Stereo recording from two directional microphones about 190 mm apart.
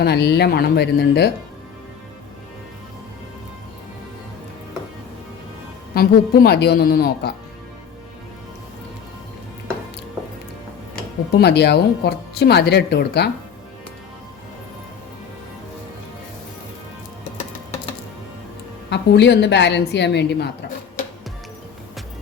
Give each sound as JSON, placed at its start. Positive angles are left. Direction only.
{"t": 0.0, "sound": "speech", "side_deg": 60}
{"t": 5.9, "sound": "speech", "side_deg": 55}
{"t": 11.3, "sound": "speech", "side_deg": 60}
{"t": 18.9, "sound": "speech", "side_deg": 65}